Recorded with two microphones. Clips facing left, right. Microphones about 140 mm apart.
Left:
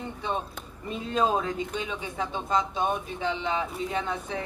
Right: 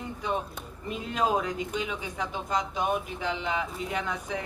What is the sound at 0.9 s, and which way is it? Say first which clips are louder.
Speech: left 2 dB; 25° left (ahead or behind).